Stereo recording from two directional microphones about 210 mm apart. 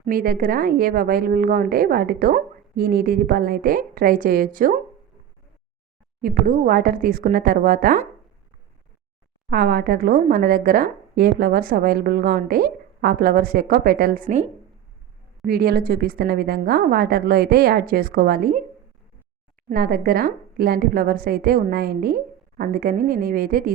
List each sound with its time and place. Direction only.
0.0 s a woman's voice: 40° right (ahead or behind)
6.2 s a woman's voice: 45° right (ahead or behind)
9.5 s a woman's voice: 45° right (ahead or behind)
15.4 s a woman's voice: 45° right (ahead or behind)
19.6 s a woman's voice: 45° right (ahead or behind)